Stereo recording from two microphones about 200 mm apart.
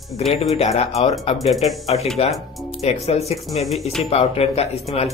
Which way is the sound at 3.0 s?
30° left (ahead or behind).